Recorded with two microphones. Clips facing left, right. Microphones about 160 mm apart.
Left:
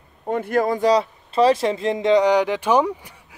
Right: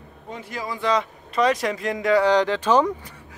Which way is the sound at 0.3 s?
55° left (ahead or behind).